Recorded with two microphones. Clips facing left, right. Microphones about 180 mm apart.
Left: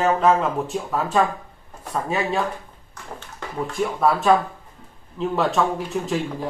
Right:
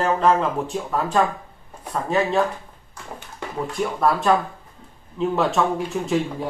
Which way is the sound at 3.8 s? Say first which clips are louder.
Left 1 dB; centre (ahead or behind).